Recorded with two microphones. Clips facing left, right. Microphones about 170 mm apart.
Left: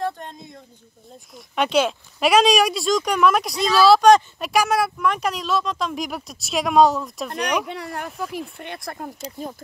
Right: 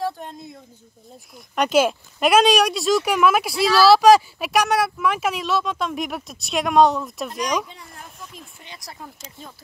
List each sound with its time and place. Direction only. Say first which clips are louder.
0.0 s a sound: even; 5° right (ahead or behind)
1.3 s speech: right 1 dB; centre (ahead or behind)
7.3 s speech: left 2 dB; 60° left (ahead or behind)